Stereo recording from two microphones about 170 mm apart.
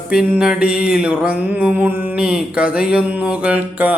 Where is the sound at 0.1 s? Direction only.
5° right (ahead or behind).